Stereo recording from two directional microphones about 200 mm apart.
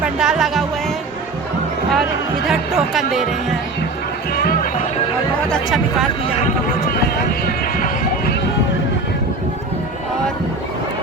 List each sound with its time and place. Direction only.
0.0 s speech: 5° right (ahead or behind)
2.5 s speech: centre (ahead or behind)
4.4 s music: 45° left (ahead or behind)
5.5 s speech: centre (ahead or behind)